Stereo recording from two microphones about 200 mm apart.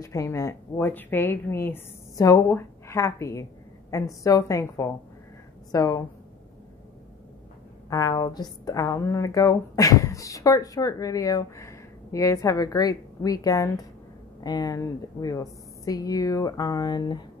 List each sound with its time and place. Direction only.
0.0 s a woman's voice: 15° left (ahead or behind)
7.9 s a woman's voice: 15° left (ahead or behind)